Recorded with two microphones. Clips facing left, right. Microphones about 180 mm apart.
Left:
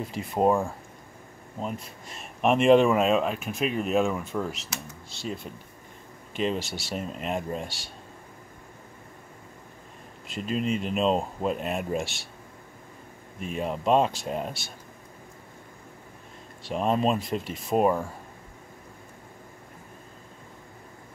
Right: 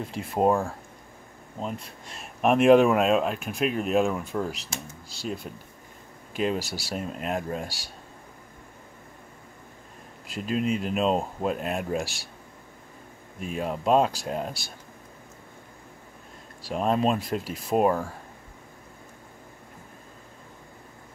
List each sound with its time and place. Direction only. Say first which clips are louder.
0.0 s speech: even; centre (ahead or behind)
10.2 s speech: right 1 dB; centre (ahead or behind)
13.4 s speech: even; centre (ahead or behind)
16.6 s speech: even; centre (ahead or behind)